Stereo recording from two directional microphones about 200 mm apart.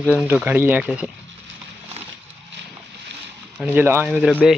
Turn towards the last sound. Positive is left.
turn(degrees=-5)  # may be behind; listen again after turning